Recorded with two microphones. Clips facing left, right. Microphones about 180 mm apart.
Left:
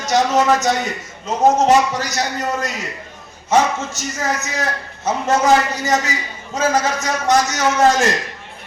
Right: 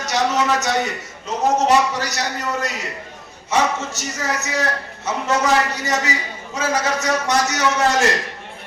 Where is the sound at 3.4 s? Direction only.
70° right (ahead or behind).